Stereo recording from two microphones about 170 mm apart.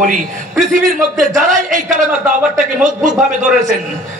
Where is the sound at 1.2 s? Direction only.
45° right (ahead or behind).